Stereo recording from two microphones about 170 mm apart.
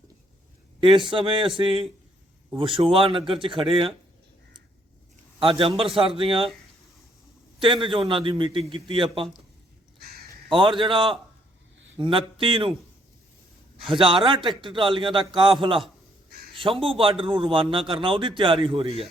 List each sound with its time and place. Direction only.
0.8 s a man's voice: 30° right (ahead or behind)
5.4 s a man's voice: 30° right (ahead or behind)
7.6 s a man's voice: 30° right (ahead or behind)
10.5 s a man's voice: 30° right (ahead or behind)
14.3 s a man's voice: 30° right (ahead or behind)
16.6 s a man's voice: 30° right (ahead or behind)